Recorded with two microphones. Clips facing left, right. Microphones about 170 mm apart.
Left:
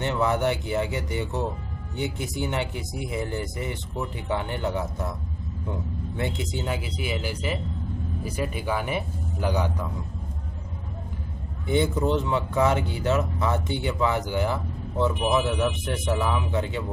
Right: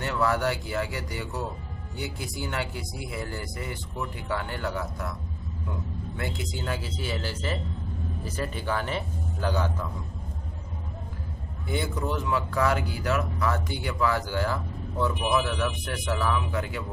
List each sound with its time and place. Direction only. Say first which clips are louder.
0.0 s speech: left 2 dB; 20° left (ahead or behind)
6.1 s a man's voice: left 5 dB; 20° left (ahead or behind)
11.6 s speech: left 7 dB; 20° left (ahead or behind)